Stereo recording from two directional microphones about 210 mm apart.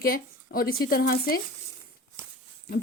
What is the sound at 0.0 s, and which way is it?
A woman's voice, 45° left (ahead or behind).